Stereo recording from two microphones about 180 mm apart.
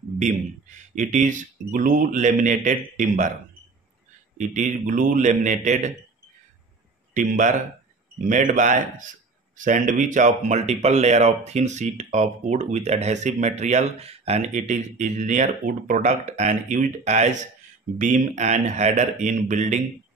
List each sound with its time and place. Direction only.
0.9 s speech: 45° right (ahead or behind)
4.4 s speech: 45° right (ahead or behind)
7.2 s speech: 45° right (ahead or behind)